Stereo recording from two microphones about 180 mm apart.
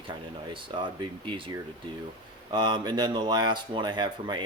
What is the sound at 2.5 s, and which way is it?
Speech, 25° right (ahead or behind).